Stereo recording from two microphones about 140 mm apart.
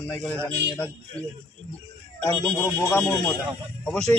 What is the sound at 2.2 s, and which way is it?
Speech, 15° left (ahead or behind).